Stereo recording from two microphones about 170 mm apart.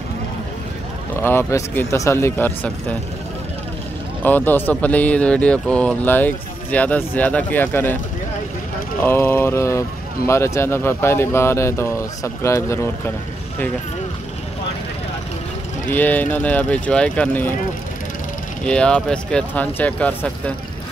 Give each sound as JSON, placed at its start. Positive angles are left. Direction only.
{"t": 1.2, "sound": "speech", "side_deg": 15}
{"t": 4.2, "sound": "speech", "side_deg": 10}
{"t": 9.0, "sound": "speech", "side_deg": 15}
{"t": 15.9, "sound": "speech", "side_deg": 10}
{"t": 18.6, "sound": "speech", "side_deg": 5}